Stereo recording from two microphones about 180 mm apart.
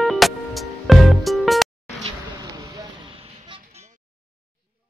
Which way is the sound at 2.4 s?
20° right (ahead or behind).